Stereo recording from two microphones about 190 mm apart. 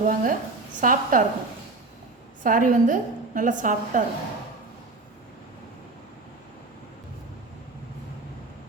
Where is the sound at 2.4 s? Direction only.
45° right (ahead or behind).